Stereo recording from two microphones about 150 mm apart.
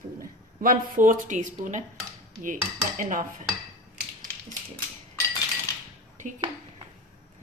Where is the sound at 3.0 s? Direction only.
60° right (ahead or behind).